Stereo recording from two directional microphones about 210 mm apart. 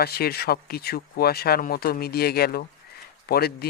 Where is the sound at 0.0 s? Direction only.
50° left (ahead or behind).